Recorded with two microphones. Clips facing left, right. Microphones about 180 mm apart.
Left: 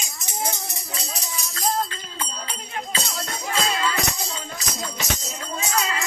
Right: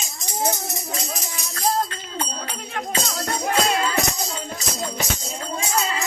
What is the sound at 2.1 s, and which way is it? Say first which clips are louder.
Music: right 5 dB; 70° right (ahead or behind).